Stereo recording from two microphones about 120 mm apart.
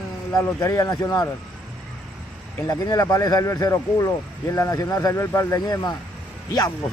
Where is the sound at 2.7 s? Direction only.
35° left (ahead or behind).